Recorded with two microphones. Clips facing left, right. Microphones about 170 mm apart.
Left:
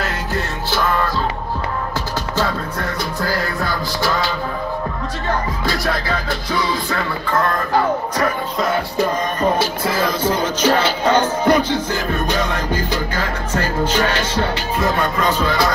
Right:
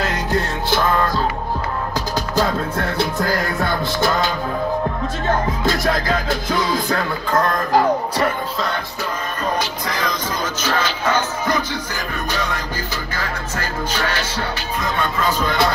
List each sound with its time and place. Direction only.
0.0 s music: 15° right (ahead or behind)
3.6 s music: 25° right (ahead or behind)
6.2 s music: 45° right (ahead or behind)
9.4 s music: 5° left (ahead or behind)
12.9 s music: 10° left (ahead or behind)